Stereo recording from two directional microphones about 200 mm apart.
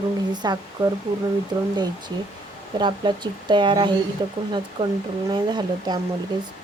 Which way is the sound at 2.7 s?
25° right (ahead or behind).